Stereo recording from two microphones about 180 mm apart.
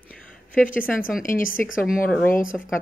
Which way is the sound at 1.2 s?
50° left (ahead or behind).